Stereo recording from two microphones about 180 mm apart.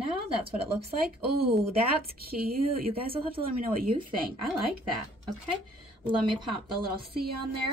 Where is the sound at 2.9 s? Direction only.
30° right (ahead or behind).